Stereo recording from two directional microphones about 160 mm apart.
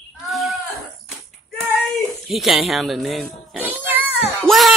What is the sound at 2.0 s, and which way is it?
Speech, centre (ahead or behind).